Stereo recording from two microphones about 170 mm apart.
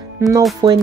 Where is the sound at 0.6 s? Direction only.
25° right (ahead or behind).